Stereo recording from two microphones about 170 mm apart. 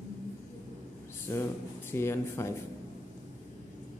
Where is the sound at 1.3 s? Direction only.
15° left (ahead or behind).